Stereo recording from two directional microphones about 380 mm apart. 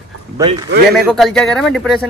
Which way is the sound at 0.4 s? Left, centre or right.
Centre.